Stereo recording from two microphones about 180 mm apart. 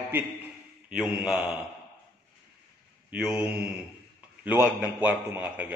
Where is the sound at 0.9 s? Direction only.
5° right (ahead or behind).